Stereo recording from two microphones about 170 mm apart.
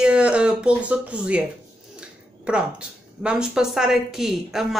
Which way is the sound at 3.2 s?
5° right (ahead or behind).